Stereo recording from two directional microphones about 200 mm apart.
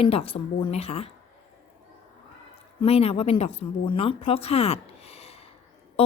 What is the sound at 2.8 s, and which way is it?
A woman's voice, 30° left (ahead or behind).